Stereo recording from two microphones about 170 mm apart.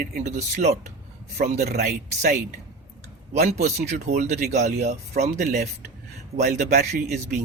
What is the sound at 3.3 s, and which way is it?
Speech, 40° right (ahead or behind).